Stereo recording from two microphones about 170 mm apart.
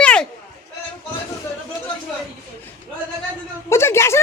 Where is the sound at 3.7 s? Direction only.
15° left (ahead or behind).